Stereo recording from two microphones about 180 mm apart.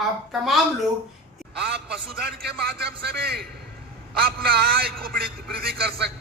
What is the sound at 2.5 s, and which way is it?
A man's voice, 60° right (ahead or behind).